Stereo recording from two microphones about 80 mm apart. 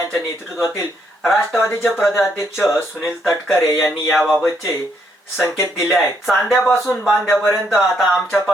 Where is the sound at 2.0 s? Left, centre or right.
Left.